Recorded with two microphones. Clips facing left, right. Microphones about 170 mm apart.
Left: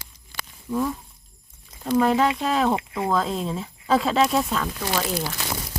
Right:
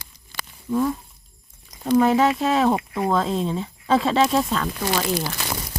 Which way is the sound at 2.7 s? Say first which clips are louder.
Right 2 dB; 20° right (ahead or behind).